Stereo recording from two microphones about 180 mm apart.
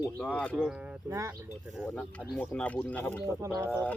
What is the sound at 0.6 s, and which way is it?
Pulleys, 5° right (ahead or behind).